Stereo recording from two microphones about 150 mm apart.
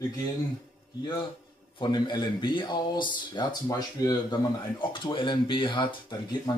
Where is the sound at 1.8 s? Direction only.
30° left (ahead or behind).